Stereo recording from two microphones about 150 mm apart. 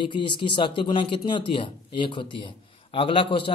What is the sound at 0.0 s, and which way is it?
Speech, 35° left (ahead or behind).